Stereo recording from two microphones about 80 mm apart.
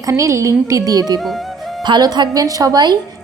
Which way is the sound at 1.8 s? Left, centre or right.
Right.